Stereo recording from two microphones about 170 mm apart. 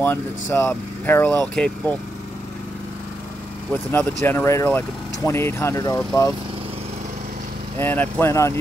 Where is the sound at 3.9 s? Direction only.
10° left (ahead or behind).